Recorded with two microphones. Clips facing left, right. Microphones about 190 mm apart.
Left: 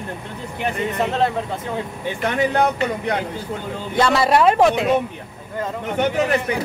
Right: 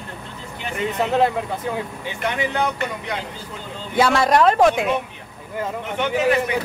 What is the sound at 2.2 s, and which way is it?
Speech, 50° left (ahead or behind).